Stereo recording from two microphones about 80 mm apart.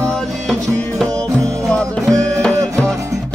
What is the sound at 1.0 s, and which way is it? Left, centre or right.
Music, centre.